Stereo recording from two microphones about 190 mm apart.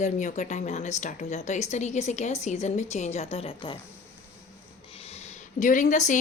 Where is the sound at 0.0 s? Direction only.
40° left (ahead or behind).